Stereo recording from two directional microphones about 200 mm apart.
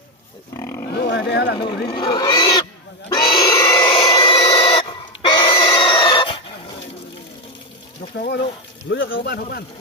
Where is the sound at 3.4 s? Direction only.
20° left (ahead or behind).